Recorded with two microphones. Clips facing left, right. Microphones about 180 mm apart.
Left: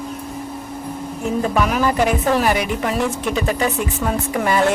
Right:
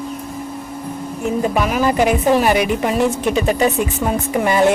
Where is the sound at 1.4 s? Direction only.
15° right (ahead or behind).